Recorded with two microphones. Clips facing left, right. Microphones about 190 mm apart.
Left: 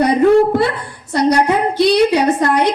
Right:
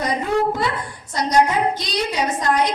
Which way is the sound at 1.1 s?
65° left (ahead or behind).